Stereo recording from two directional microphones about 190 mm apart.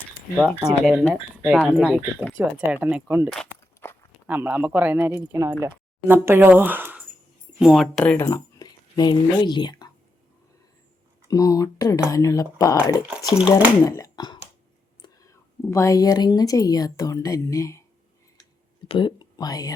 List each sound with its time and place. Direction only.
0.9 s speech: 5° right (ahead or behind)
3.2 s a sound: 10° left (ahead or behind)
4.3 s speech: 10° right (ahead or behind)
8.2 s speech: 20° left (ahead or behind)
11.3 s speech: 20° left (ahead or behind)
13.1 s speech: 5° right (ahead or behind)
13.8 s speech: 20° left (ahead or behind)
18.9 s speech: 25° left (ahead or behind)